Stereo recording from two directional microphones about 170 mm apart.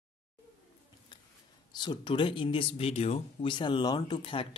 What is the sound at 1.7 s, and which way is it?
Speech, 25° left (ahead or behind).